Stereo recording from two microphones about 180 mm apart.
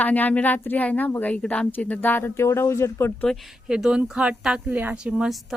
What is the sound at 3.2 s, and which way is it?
Speech, centre (ahead or behind).